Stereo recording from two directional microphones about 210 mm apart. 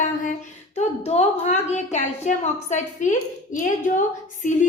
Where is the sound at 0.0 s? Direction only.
35° left (ahead or behind).